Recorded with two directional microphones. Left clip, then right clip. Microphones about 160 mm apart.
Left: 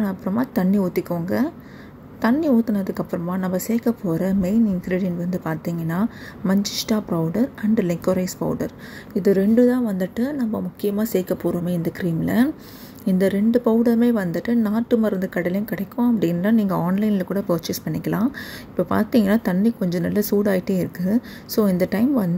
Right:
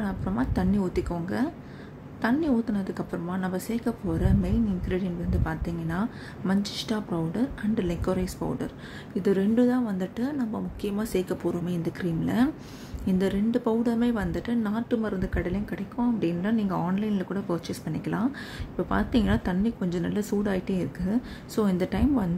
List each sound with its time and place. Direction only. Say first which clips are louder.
0.0 s a woman's voice: left 6 dB; 25° left (ahead or behind)